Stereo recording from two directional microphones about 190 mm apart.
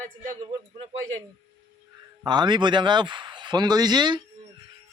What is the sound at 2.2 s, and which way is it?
Speech, 25° right (ahead or behind).